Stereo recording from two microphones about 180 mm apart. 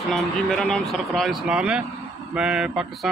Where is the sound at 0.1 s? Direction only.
5° left (ahead or behind).